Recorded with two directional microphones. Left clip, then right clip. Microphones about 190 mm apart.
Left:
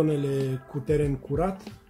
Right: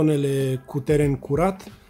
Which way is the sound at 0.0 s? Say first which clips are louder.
Right 4 dB; 40° right (ahead or behind).